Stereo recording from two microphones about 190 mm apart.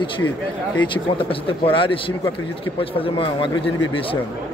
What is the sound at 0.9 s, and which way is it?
A man's voice, 30° left (ahead or behind).